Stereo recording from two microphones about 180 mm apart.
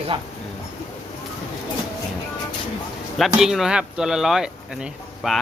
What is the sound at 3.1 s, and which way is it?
Speech, centre (ahead or behind).